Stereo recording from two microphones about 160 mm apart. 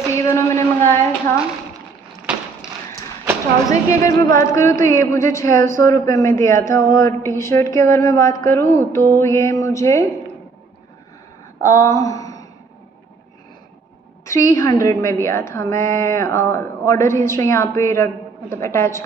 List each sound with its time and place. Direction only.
0.1 s speech: 15° left (ahead or behind)
2.3 s a sound: 5° right (ahead or behind)
3.6 s a man's voice: 20° left (ahead or behind)
11.6 s speech: 20° left (ahead or behind)
14.2 s a man's voice: 20° left (ahead or behind)